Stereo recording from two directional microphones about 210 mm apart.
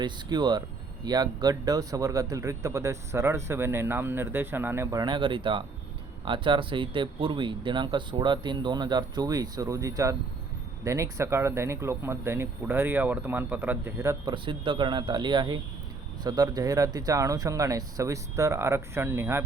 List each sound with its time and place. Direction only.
0.0 s speech: 20° right (ahead or behind)